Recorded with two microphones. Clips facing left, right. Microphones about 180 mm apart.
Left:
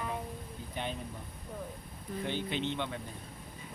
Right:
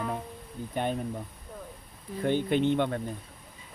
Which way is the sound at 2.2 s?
50° right (ahead or behind).